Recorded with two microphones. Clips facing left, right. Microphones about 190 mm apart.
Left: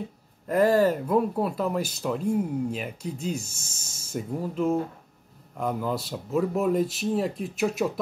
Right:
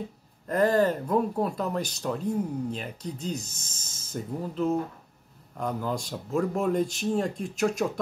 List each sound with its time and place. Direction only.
0.5 s speech: 10° left (ahead or behind)